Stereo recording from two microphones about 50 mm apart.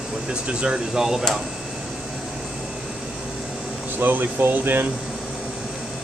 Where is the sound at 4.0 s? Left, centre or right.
Right.